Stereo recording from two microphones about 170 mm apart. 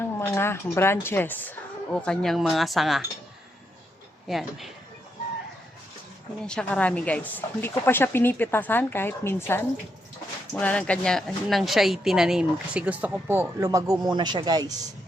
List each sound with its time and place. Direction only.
0.0 s speech: 15° left (ahead or behind)
4.3 s speech: centre (ahead or behind)
6.4 s speech: 5° left (ahead or behind); by 14.8 s 25° right (ahead or behind)